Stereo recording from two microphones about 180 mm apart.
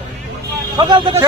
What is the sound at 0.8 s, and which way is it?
Speech, 25° right (ahead or behind).